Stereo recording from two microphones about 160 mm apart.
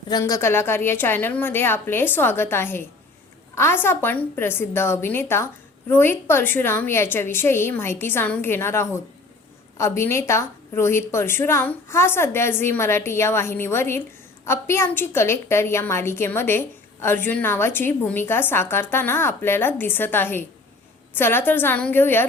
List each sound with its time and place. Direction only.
0.1 s a woman's voice: 20° left (ahead or behind)